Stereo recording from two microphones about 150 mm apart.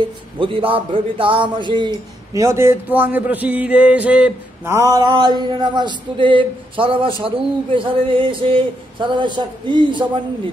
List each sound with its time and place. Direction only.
0.4 s a man's voice: 35° right (ahead or behind)